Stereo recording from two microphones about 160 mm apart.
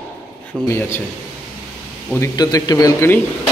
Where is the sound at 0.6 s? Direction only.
15° left (ahead or behind).